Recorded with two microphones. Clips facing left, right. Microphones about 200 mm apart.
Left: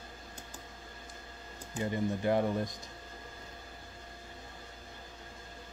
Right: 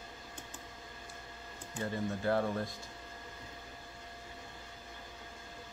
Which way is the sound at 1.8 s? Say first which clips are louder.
Left 4 dB; 15° left (ahead or behind).